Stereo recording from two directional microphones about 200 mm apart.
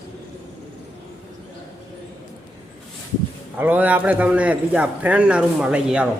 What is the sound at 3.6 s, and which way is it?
A man's voice, 10° right (ahead or behind).